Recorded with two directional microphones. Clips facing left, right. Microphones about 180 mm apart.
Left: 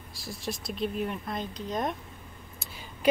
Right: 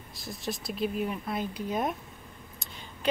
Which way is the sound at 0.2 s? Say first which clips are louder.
Even; centre (ahead or behind).